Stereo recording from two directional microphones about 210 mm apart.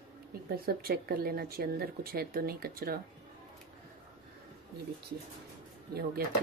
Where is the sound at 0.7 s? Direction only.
45° right (ahead or behind).